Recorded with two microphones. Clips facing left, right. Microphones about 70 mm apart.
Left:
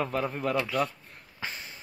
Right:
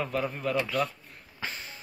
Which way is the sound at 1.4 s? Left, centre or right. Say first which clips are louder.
Even; centre.